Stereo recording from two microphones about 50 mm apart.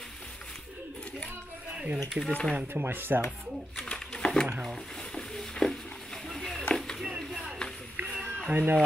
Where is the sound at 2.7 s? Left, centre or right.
Right.